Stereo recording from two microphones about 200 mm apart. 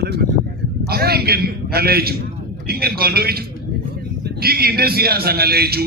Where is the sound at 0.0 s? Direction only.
55° right (ahead or behind).